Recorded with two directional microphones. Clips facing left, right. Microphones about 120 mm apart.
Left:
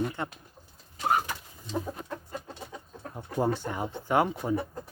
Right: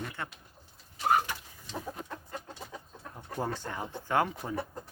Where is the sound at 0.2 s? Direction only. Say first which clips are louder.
Left 5 dB; 20° left (ahead or behind).